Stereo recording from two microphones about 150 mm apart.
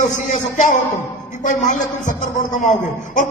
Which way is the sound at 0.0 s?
50° left (ahead or behind).